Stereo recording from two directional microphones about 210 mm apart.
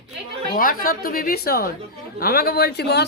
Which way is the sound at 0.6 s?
40° left (ahead or behind).